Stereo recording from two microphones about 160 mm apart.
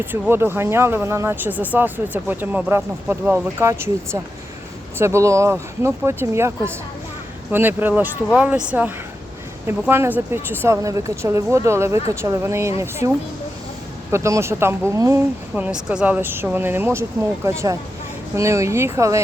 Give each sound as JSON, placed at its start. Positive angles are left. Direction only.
{"t": 0.0, "sound": "speech", "side_deg": -15}
{"t": 7.5, "sound": "speech", "side_deg": -10}
{"t": 15.5, "sound": "speech", "side_deg": -5}